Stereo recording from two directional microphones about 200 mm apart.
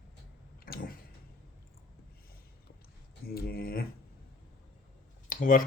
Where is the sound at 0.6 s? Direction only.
50° left (ahead or behind).